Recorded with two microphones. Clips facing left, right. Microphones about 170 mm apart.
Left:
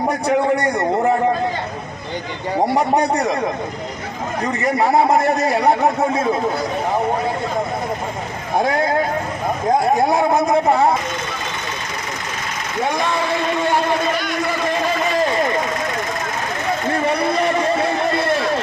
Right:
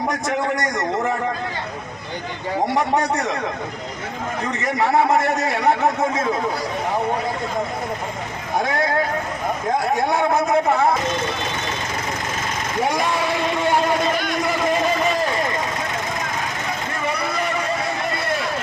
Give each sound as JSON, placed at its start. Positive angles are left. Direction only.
{"t": 0.3, "sound": "a man's voice", "side_deg": 35}
{"t": 2.9, "sound": "a man's voice", "side_deg": 15}
{"t": 4.6, "sound": "a man's voice", "side_deg": 35}
{"t": 9.9, "sound": "a man's voice", "side_deg": 35}